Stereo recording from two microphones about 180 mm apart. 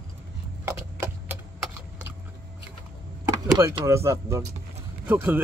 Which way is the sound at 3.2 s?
15° right (ahead or behind).